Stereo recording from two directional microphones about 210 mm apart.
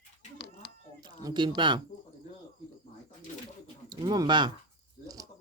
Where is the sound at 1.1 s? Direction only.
20° right (ahead or behind).